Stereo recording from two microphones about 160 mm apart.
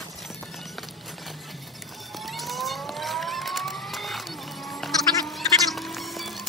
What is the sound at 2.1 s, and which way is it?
Vehicle, centre (ahead or behind).